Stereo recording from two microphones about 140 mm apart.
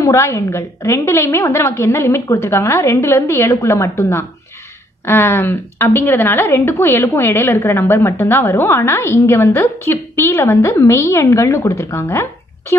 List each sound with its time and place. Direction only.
0.0 s a woman's voice: 20° left (ahead or behind)